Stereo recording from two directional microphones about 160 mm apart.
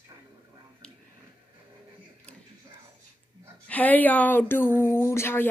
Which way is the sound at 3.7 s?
10° left (ahead or behind).